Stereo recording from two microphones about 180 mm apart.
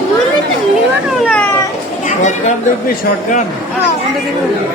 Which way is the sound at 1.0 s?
5° left (ahead or behind).